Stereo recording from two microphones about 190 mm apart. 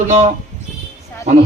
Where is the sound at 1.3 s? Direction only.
35° right (ahead or behind).